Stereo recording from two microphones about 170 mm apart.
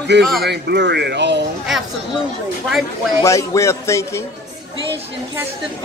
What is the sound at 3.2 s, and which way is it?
A man's voice, 15° left (ahead or behind).